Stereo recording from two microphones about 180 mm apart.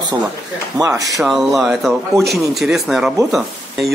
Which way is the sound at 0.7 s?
20° right (ahead or behind).